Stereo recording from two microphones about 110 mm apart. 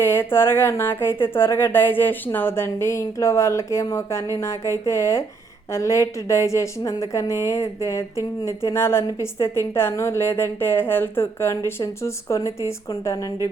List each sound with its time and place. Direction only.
0.0 s a woman's voice: 20° left (ahead or behind)